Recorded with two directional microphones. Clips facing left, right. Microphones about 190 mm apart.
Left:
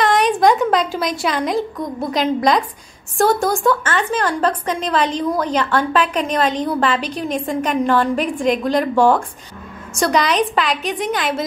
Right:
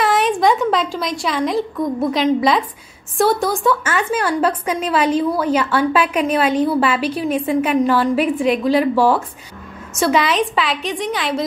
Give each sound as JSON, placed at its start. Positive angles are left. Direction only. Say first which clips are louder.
{"t": 0.0, "sound": "a woman's voice", "louder": "left 1 dB", "side_deg": -5}